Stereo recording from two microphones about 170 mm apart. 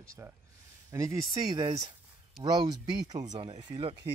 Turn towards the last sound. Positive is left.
turn(degrees=-30)  # may be behind; listen again after turning